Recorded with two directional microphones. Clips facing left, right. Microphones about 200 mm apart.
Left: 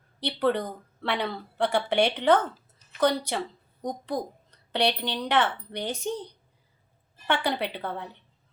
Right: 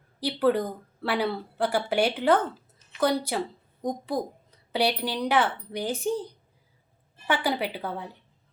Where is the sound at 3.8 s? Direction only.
5° right (ahead or behind).